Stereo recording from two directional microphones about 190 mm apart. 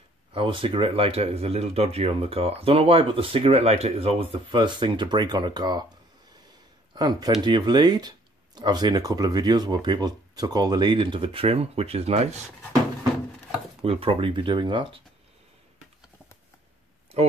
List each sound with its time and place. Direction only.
0.3 s speech: 25° right (ahead or behind)
7.0 s speech: 20° right (ahead or behind)
13.8 s speech: 30° right (ahead or behind)